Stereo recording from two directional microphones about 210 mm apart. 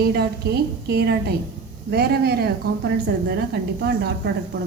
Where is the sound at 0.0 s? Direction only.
50° right (ahead or behind).